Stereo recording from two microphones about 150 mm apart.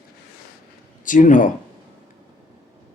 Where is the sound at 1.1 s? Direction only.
55° left (ahead or behind).